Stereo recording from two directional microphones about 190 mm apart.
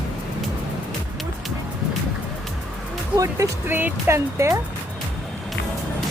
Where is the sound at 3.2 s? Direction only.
15° right (ahead or behind).